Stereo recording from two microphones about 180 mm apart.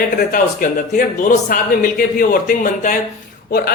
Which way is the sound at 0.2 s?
50° left (ahead or behind).